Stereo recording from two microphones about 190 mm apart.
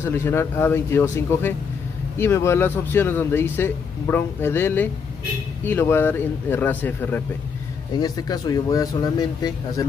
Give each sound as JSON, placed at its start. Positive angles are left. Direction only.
{"t": 0.0, "sound": "speech", "side_deg": 15}
{"t": 8.0, "sound": "speech", "side_deg": 20}